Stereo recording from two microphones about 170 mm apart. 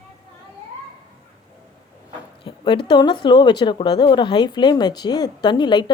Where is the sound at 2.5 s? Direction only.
30° left (ahead or behind).